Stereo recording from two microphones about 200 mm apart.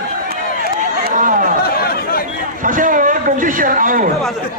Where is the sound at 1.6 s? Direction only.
50° left (ahead or behind).